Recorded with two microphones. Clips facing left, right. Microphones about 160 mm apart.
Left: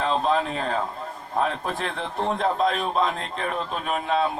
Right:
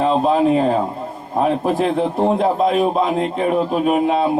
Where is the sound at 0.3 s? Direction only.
10° right (ahead or behind).